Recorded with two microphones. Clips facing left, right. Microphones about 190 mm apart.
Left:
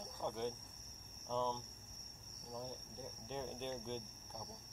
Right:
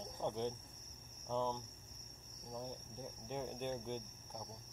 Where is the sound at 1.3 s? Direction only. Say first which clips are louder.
Right 1 dB; 15° right (ahead or behind).